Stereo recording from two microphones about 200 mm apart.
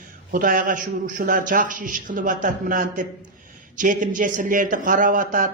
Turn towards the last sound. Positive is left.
turn(degrees=-45)  # may be behind; listen again after turning